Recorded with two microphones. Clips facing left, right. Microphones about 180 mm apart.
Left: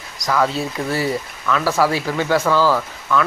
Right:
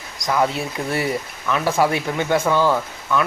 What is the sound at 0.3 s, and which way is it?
Speech, 20° right (ahead or behind).